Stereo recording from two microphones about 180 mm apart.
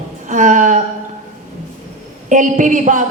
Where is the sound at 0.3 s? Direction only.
45° right (ahead or behind).